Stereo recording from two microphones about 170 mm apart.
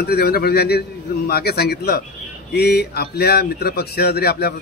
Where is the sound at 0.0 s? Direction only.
65° left (ahead or behind).